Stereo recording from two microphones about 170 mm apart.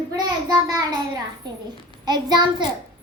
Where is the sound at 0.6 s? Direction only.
20° right (ahead or behind).